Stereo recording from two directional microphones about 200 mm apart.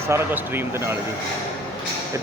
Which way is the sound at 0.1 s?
10° right (ahead or behind).